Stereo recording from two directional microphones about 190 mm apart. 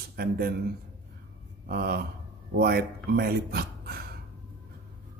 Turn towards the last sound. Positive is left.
turn(degrees=-55)  # may be behind; listen again after turning